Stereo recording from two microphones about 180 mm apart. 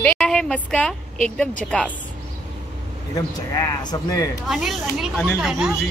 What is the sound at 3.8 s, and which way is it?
Speech, 20° left (ahead or behind).